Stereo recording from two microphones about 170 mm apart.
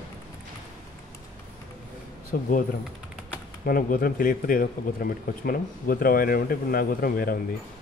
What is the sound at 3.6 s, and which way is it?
Speech, 55° left (ahead or behind).